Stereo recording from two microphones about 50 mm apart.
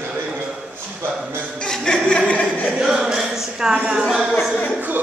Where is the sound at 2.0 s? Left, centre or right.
Left.